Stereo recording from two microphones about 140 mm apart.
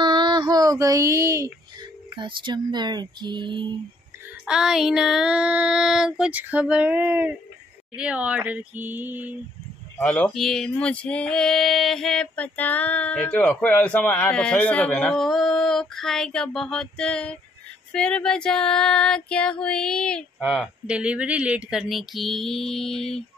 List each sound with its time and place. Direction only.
0.0 s a sound: 30° right (ahead or behind)
2.1 s speech: 35° right (ahead or behind)
4.5 s child singing: 5° right (ahead or behind)
7.9 s speech: 5° right (ahead or behind)
9.9 s a sound: 10° left (ahead or behind)
17.9 s child singing: 5° left (ahead or behind)